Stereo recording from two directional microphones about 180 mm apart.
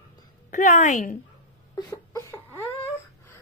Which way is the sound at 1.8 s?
20° left (ahead or behind).